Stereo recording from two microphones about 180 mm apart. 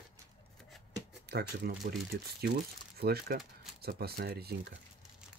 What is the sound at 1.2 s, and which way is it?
Speech, 65° right (ahead or behind).